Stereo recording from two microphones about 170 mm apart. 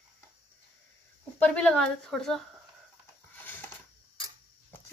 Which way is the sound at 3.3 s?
10° left (ahead or behind).